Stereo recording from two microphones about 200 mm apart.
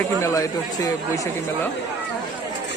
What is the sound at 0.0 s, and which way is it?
Speech, 15° left (ahead or behind).